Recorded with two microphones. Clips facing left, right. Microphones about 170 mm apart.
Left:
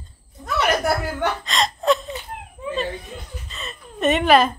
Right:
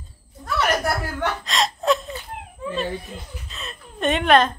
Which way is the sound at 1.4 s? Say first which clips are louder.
Left 1 dB; centre (ahead or behind).